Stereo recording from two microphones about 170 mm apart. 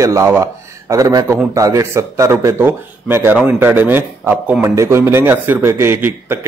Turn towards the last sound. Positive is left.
turn(degrees=-15)  # may be behind; listen again after turning